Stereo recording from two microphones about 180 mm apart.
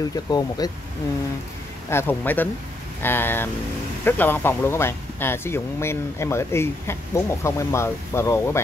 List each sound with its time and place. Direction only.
0.1 s speech: 20° left (ahead or behind)
1.9 s speech: 10° left (ahead or behind)